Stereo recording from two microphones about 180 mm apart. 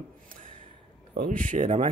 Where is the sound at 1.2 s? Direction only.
50° right (ahead or behind).